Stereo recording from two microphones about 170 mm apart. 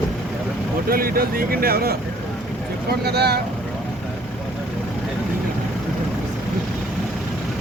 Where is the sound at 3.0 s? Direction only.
70° right (ahead or behind).